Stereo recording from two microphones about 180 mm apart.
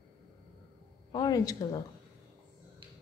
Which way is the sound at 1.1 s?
20° left (ahead or behind).